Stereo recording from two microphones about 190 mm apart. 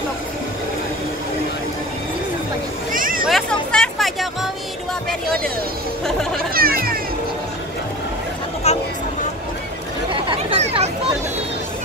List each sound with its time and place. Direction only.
2.9 s vehicle: 45° right (ahead or behind)
3.3 s music: centre (ahead or behind)
6.0 s a sound: centre (ahead or behind)
6.5 s music: 50° right (ahead or behind)
8.6 s a sound: 35° left (ahead or behind)
10.2 s chatter: 30° right (ahead or behind)